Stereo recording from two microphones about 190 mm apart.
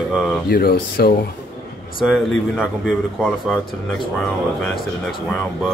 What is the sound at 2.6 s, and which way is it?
A man's voice, centre (ahead or behind).